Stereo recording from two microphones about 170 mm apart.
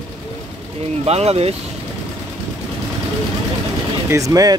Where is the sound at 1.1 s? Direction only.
35° right (ahead or behind).